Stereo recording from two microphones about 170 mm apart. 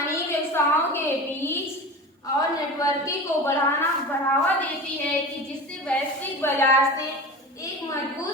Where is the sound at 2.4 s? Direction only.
20° left (ahead or behind).